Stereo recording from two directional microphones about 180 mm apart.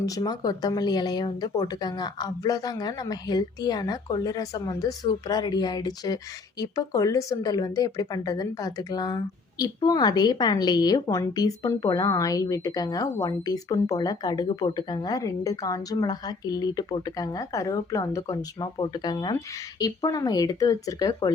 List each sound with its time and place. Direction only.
0.0 s speech: 20° left (ahead or behind)